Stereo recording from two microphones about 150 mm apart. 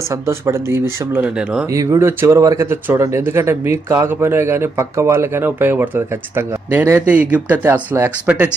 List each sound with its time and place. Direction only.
0.1 s speech: 20° right (ahead or behind)
1.6 s speech: 20° right (ahead or behind)